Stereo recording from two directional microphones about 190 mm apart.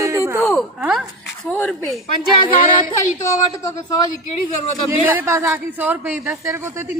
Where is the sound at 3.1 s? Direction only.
15° left (ahead or behind).